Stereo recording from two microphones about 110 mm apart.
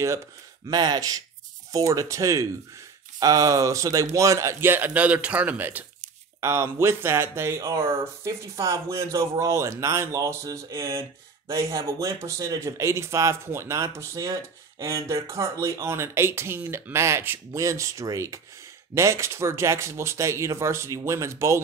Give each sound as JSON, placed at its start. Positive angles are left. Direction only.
{"t": 0.7, "sound": "speech", "side_deg": -40}
{"t": 6.4, "sound": "speech", "side_deg": -25}